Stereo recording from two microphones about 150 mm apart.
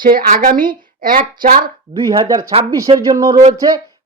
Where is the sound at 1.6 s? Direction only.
30° right (ahead or behind).